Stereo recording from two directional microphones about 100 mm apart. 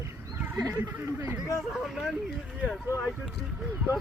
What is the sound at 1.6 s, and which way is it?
Speech, centre (ahead or behind).